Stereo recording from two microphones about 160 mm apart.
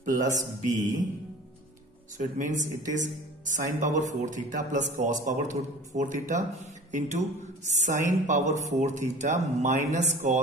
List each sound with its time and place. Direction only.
0.0 s speech: 50° right (ahead or behind)
2.1 s speech: 50° right (ahead or behind)